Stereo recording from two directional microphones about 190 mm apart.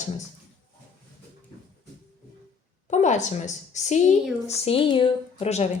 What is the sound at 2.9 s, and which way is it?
A woman's voice, 40° left (ahead or behind).